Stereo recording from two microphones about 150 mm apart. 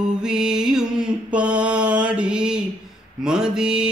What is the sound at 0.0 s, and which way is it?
Mantra, 5° right (ahead or behind).